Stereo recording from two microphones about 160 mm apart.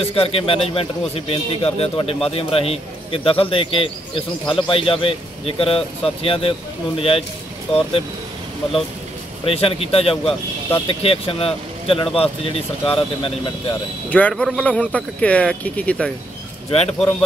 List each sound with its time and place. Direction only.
0.1 s a man's voice: 35° left (ahead or behind)
9.4 s a man's voice: 35° left (ahead or behind)
14.1 s speech: 5° left (ahead or behind)
16.7 s a man's voice: 40° left (ahead or behind)